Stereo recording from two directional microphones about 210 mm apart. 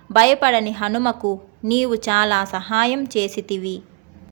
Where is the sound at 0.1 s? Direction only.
30° right (ahead or behind).